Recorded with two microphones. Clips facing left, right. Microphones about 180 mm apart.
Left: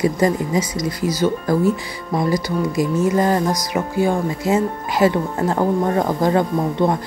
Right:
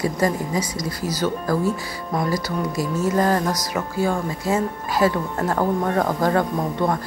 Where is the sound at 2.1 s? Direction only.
15° left (ahead or behind).